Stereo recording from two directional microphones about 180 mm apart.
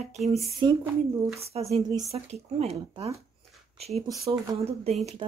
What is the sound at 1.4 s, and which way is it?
Speech, 35° right (ahead or behind).